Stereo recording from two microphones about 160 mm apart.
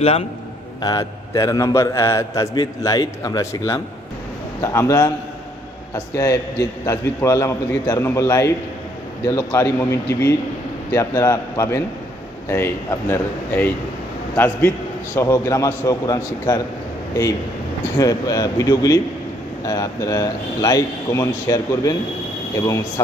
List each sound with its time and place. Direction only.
0.7 s a man's voice: 25° left (ahead or behind)
6.1 s a man's voice: 20° left (ahead or behind)
17.9 s a man's voice: 20° left (ahead or behind)